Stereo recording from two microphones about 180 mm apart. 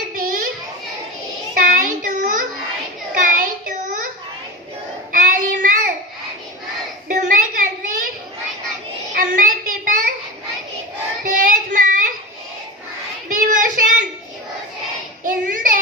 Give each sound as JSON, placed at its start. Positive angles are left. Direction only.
{"t": 0.2, "sound": "child singing", "side_deg": -50}
{"t": 1.5, "sound": "child singing", "side_deg": -50}
{"t": 5.1, "sound": "child singing", "side_deg": -45}
{"t": 7.1, "sound": "a sound", "side_deg": -45}
{"t": 9.1, "sound": "a sound", "side_deg": -50}
{"t": 11.2, "sound": "child singing", "side_deg": -50}
{"t": 13.2, "sound": "child singing", "side_deg": -45}
{"t": 15.2, "sound": "child singing", "side_deg": -45}